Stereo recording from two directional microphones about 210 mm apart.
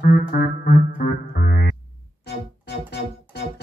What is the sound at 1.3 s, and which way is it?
Synthesizer, 45° left (ahead or behind).